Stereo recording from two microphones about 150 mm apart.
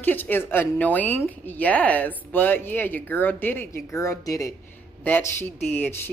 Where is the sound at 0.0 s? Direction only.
10° left (ahead or behind).